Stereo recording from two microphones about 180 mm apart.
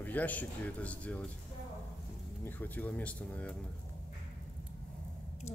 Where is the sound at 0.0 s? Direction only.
10° left (ahead or behind).